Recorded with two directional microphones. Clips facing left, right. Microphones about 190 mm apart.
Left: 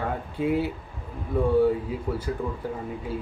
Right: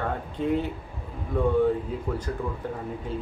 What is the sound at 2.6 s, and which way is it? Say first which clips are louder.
Speech: left 1 dB; 5° left (ahead or behind).